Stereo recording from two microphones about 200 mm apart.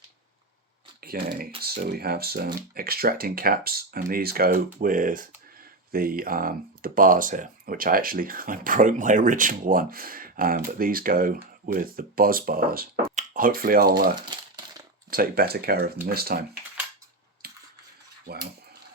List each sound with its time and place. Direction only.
1.0 s speech: 50° right (ahead or behind)
14.2 s crumpling: 20° right (ahead or behind)
15.1 s speech: 50° right (ahead or behind)
17.4 s a sound: 50° right (ahead or behind)